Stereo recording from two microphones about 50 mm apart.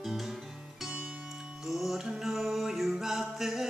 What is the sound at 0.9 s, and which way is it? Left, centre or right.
Music, right.